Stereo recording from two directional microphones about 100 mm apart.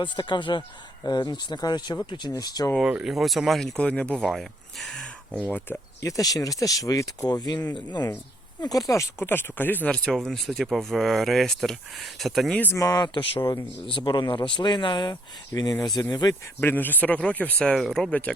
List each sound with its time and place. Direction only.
0.0 s speech: 50° left (ahead or behind)
3.0 s speech: centre (ahead or behind)
5.5 s speech: 15° left (ahead or behind)
6.0 s speech: 35° left (ahead or behind); by 9.9 s 20° left (ahead or behind)
9.9 s speech: 10° left (ahead or behind)
12.7 s speech: 40° left (ahead or behind)
13.5 s speech: 55° left (ahead or behind)
15.1 s speech: 40° left (ahead or behind)
16.6 s speech: 20° left (ahead or behind)